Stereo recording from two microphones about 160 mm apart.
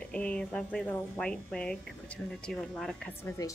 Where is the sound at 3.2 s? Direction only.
20° left (ahead or behind).